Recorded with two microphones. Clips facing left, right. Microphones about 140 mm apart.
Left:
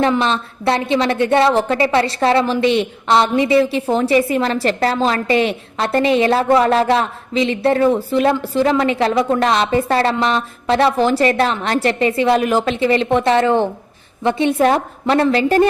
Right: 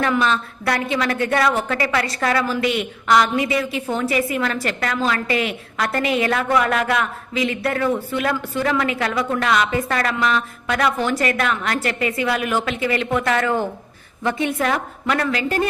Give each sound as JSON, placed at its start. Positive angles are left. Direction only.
{"t": 0.0, "sound": "a woman's voice", "side_deg": 25}